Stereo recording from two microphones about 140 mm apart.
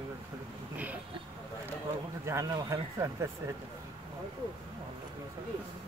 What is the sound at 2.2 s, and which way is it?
Speech, 25° right (ahead or behind).